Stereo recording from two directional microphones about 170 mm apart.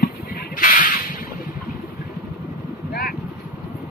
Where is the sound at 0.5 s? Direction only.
50° left (ahead or behind).